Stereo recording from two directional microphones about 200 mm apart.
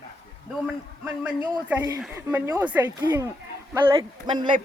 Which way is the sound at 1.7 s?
10° right (ahead or behind).